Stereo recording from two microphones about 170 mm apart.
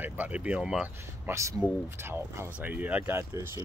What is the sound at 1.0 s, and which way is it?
Speech, 15° right (ahead or behind).